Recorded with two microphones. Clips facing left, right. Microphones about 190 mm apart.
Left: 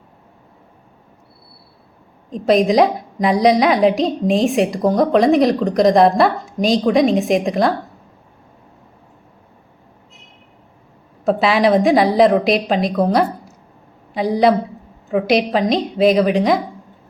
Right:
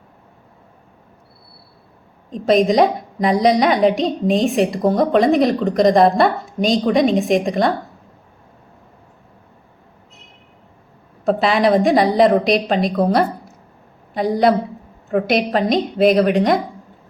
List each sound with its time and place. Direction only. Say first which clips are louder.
2.3 s a woman's voice: left 1 dB; centre (ahead or behind)
11.3 s a woman's voice: left 1 dB; centre (ahead or behind)